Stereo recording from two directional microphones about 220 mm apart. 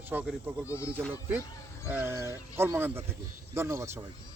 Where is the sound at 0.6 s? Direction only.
15° left (ahead or behind).